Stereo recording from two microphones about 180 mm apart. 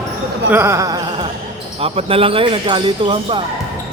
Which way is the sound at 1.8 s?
30° right (ahead or behind).